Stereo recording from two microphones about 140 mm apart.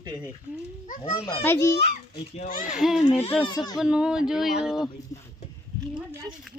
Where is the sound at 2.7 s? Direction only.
5° right (ahead or behind).